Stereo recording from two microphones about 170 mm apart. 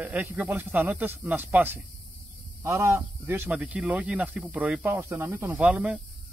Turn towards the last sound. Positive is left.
turn(degrees=-5)  # may be behind; listen again after turning